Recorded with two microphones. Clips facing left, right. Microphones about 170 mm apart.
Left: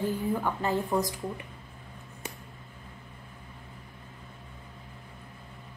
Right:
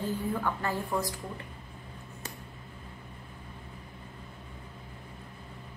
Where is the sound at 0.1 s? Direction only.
15° left (ahead or behind).